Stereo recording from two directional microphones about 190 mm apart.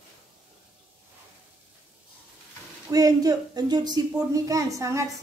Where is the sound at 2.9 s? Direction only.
20° right (ahead or behind).